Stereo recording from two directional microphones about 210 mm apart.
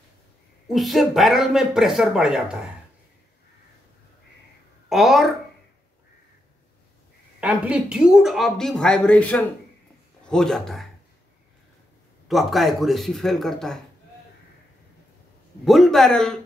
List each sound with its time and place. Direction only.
0.7 s speech: centre (ahead or behind)
4.8 s speech: centre (ahead or behind)
7.3 s speech: 5° right (ahead or behind)
12.3 s speech: centre (ahead or behind)
15.6 s speech: centre (ahead or behind)